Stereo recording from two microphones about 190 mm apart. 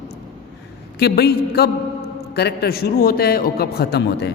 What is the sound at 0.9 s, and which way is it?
A man's voice, 60° left (ahead or behind).